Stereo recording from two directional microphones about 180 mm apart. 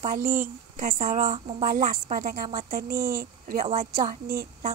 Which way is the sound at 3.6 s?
35° right (ahead or behind).